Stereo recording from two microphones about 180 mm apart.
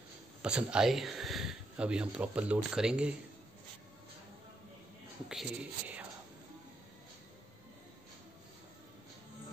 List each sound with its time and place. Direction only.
0.4 s speech: 5° right (ahead or behind)
5.3 s speech: 5° right (ahead or behind)